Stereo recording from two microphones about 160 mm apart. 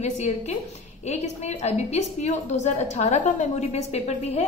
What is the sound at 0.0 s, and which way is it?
A woman's voice, 45° left (ahead or behind).